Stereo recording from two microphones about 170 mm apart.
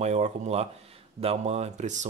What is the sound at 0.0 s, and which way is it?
Speech, 40° right (ahead or behind).